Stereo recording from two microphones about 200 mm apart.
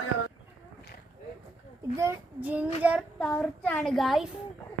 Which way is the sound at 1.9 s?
10° right (ahead or behind).